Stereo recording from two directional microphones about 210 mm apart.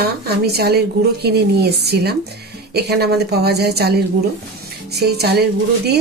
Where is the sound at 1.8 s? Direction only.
50° right (ahead or behind).